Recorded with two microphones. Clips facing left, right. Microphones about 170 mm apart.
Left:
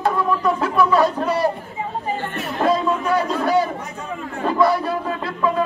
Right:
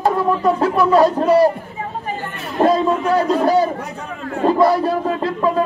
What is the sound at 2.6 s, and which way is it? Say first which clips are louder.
Speech: right 4 dB; 35° right (ahead or behind).